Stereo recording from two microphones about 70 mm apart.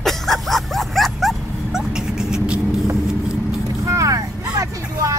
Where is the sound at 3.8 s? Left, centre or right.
Right.